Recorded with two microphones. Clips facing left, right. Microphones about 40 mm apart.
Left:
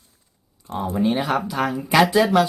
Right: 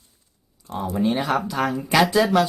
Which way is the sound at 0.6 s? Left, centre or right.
Left.